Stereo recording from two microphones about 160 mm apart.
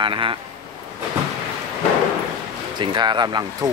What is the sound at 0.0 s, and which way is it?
Speech, 30° right (ahead or behind).